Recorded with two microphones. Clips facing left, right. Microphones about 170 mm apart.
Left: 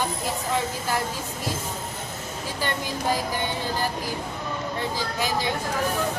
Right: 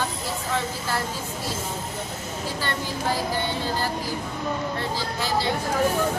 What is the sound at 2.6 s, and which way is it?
Speech, 15° left (ahead or behind).